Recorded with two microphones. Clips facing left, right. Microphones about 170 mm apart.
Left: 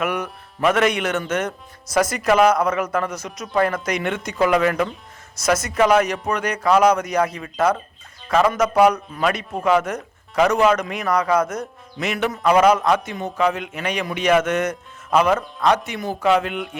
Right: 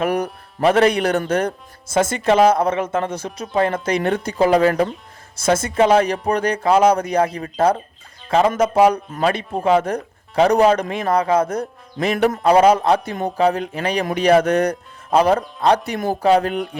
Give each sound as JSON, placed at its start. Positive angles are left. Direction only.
{"t": 0.0, "sound": "speech", "side_deg": -35}
{"t": 12.0, "sound": "speech", "side_deg": -45}
{"t": 12.4, "sound": "speech", "side_deg": -30}